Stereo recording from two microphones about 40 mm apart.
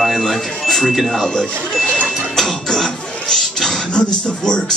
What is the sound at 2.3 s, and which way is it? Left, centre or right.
Music, centre.